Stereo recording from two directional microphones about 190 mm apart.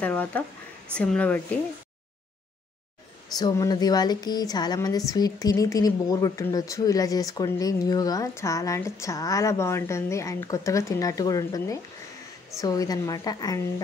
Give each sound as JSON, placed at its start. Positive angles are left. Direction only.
{"t": 0.0, "sound": "a woman's voice", "side_deg": 10}
{"t": 3.3, "sound": "a woman's voice", "side_deg": 20}